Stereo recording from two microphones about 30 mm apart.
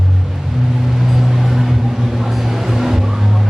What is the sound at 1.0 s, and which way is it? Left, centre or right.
Music, centre.